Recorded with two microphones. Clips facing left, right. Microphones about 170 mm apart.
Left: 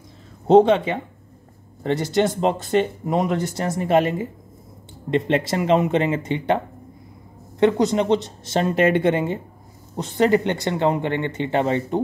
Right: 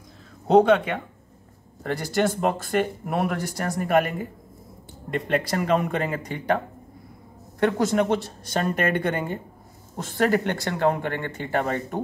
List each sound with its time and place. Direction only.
0.5 s speech: 25° left (ahead or behind)
7.6 s speech: 20° left (ahead or behind)